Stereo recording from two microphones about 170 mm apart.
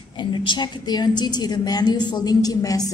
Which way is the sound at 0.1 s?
30° left (ahead or behind).